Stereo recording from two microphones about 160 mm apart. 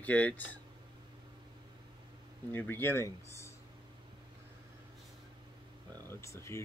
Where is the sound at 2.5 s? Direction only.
10° left (ahead or behind).